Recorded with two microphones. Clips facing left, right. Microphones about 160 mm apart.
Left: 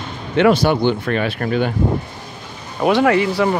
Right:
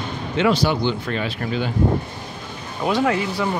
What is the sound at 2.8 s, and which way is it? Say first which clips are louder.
Speech: left 6 dB; 70° left (ahead or behind).